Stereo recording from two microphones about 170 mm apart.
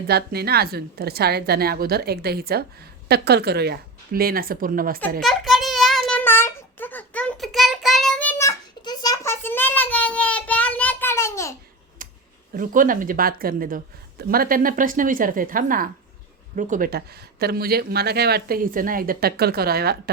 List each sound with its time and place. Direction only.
0.1 s a woman's voice: 70° right (ahead or behind)
5.2 s child singing: centre (ahead or behind); by 11.5 s 15° left (ahead or behind)
12.0 s a sound: 50° right (ahead or behind)
12.5 s a woman's voice: 50° right (ahead or behind)
17.4 s a woman's voice: 65° right (ahead or behind)